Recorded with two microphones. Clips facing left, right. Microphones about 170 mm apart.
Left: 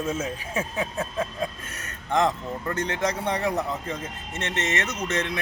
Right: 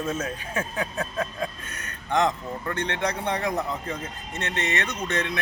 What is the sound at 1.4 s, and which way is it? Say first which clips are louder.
Speech: left 1 dB; 25° left (ahead or behind).